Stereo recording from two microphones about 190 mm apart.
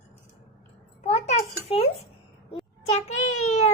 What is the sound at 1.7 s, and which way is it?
Dishes, 30° left (ahead or behind).